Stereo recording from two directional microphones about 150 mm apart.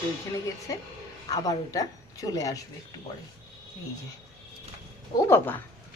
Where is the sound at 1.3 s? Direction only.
25° left (ahead or behind).